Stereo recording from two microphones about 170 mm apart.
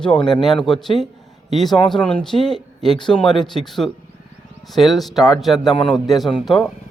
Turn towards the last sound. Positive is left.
turn(degrees=0)  # may be behind; listen again after turning